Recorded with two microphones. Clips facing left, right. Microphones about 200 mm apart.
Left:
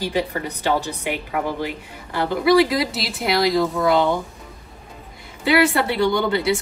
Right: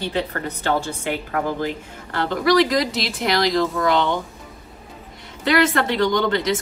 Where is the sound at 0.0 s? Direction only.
10° left (ahead or behind).